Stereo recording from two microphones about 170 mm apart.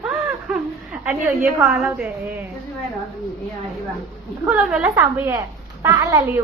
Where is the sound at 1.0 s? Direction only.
5° right (ahead or behind).